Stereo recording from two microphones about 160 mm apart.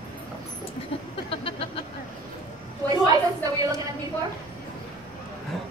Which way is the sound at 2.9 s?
20° right (ahead or behind).